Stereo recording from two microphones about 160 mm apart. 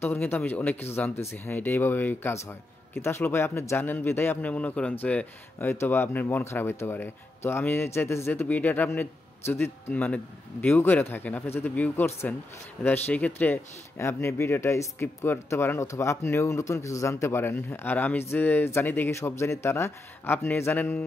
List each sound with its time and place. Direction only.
0.0 s speech: 15° left (ahead or behind)